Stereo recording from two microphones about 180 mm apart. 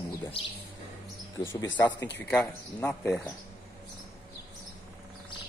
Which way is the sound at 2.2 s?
10° left (ahead or behind).